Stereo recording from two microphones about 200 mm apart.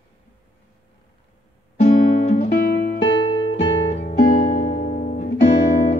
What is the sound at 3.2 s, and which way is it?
Music, 30° left (ahead or behind).